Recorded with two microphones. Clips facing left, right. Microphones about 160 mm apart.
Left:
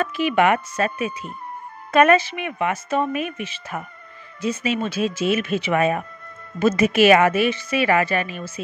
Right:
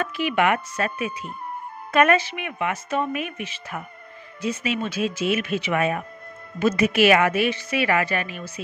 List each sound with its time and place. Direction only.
0.0 s speech: 25° left (ahead or behind)